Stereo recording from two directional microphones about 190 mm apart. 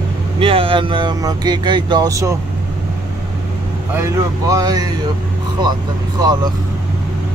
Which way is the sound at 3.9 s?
15° right (ahead or behind).